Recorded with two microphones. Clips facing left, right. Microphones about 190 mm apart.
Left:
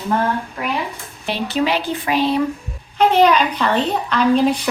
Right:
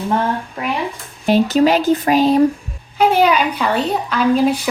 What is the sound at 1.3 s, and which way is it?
Speech, 40° right (ahead or behind).